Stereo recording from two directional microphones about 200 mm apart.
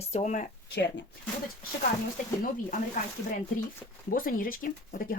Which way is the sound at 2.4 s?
40° left (ahead or behind).